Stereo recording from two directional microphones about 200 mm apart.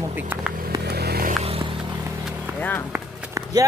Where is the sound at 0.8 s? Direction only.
55° right (ahead or behind).